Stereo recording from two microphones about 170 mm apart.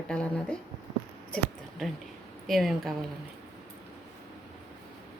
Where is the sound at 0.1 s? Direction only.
5° left (ahead or behind).